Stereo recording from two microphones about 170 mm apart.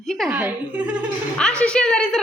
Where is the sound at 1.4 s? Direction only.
5° left (ahead or behind).